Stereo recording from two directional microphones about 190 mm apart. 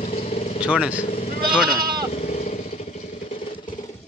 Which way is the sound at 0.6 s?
5° right (ahead or behind).